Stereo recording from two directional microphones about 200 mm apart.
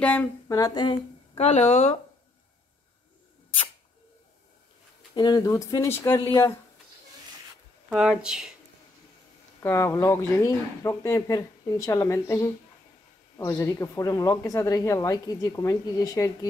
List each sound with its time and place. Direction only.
0.0 s speech: 5° left (ahead or behind)
0.5 s a woman's voice: 20° left (ahead or behind)
5.1 s speech: 20° left (ahead or behind)
7.9 s speech: 5° right (ahead or behind)
9.6 s speech: 10° left (ahead or behind)